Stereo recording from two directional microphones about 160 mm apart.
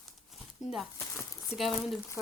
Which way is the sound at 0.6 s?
Centre (ahead or behind).